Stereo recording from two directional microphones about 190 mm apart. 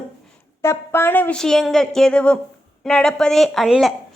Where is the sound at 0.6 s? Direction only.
15° left (ahead or behind).